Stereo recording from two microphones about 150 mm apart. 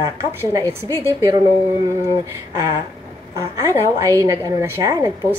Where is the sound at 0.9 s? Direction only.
20° right (ahead or behind).